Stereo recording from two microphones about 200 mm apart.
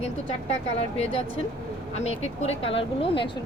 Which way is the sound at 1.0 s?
30° left (ahead or behind).